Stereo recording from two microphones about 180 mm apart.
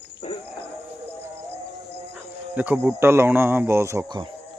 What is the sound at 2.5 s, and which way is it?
Speech, 10° right (ahead or behind).